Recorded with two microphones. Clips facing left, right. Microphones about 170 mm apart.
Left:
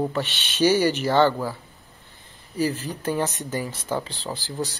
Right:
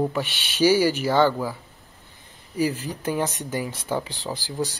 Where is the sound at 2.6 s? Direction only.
10° right (ahead or behind).